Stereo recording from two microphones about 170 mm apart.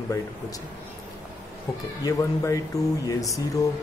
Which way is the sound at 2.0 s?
20° left (ahead or behind).